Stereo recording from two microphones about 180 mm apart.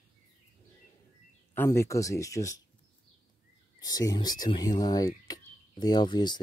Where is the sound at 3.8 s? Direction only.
20° left (ahead or behind).